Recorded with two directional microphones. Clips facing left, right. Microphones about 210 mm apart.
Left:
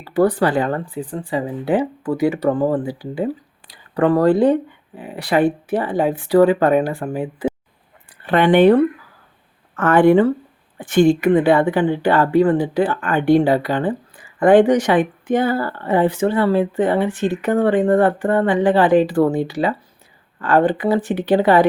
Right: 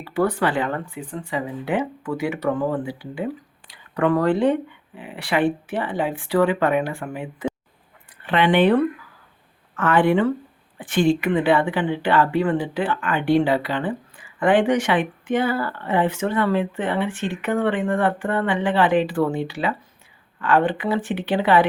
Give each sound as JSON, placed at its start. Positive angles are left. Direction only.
{"t": 0.0, "sound": "speech", "side_deg": 35}